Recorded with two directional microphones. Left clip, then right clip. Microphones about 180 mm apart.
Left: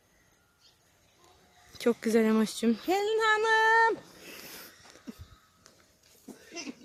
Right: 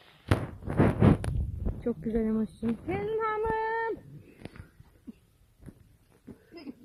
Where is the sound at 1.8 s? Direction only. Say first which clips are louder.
Left 5 dB; 15° left (ahead or behind).